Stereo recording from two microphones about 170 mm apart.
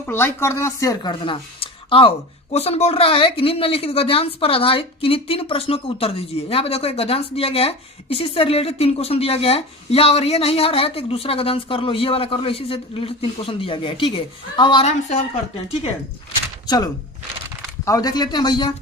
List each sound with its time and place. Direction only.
0.1 s speech: 15° left (ahead or behind)
16.6 s speech: 25° left (ahead or behind)